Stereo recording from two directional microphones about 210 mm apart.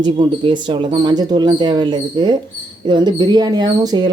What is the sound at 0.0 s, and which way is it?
Speech, 20° right (ahead or behind).